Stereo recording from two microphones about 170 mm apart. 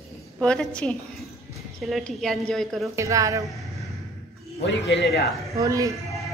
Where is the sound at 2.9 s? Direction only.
20° right (ahead or behind).